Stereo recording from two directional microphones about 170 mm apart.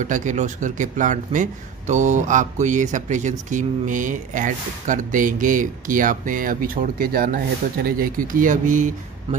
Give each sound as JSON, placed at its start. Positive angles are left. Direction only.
{"t": 0.0, "sound": "a man's voice", "side_deg": -50}